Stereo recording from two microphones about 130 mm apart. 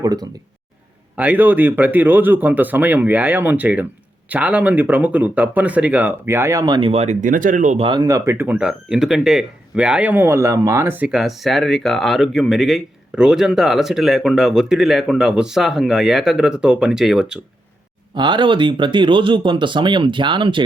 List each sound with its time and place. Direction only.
0.0 s speech: 30° right (ahead or behind)
1.1 s speech: 10° right (ahead or behind); by 6.9 s 35° right (ahead or behind)
6.9 s speech: 60° right (ahead or behind); by 7.8 s 75° right (ahead or behind)
7.8 s speech: 40° right (ahead or behind); by 17.4 s 5° right (ahead or behind)
18.1 s speech: 35° right (ahead or behind)